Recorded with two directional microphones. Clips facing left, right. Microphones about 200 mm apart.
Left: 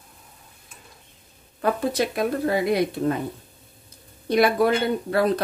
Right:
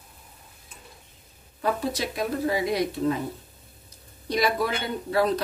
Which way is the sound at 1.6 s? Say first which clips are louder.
Left 4 dB; 55° left (ahead or behind).